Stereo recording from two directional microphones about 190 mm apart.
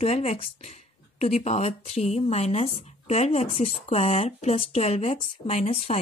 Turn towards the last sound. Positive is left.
turn(degrees=35)  # may be behind; listen again after turning